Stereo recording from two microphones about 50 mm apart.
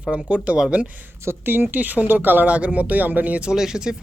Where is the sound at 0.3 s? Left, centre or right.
Centre.